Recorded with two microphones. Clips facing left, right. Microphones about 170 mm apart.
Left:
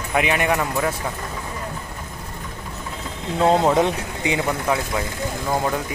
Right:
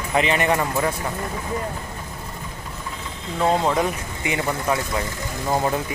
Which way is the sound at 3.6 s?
20° left (ahead or behind).